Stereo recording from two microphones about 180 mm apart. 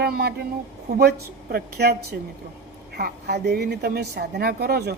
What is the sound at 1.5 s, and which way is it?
Speech, 60° right (ahead or behind).